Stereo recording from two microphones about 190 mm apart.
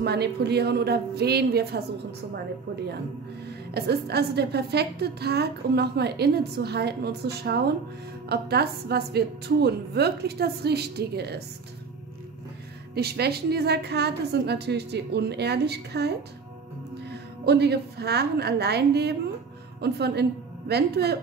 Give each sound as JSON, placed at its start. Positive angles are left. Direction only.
{"t": 0.0, "sound": "a woman's voice", "side_deg": -60}
{"t": 3.4, "sound": "a woman's voice", "side_deg": -60}
{"t": 12.9, "sound": "a woman's voice", "side_deg": -60}